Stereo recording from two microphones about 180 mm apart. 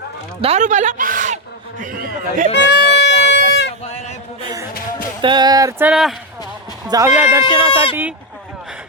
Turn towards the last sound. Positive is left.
turn(degrees=-25)  # may be behind; listen again after turning